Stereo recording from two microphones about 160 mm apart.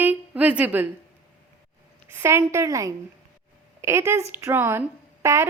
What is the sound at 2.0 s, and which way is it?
A woman's voice, 15° right (ahead or behind).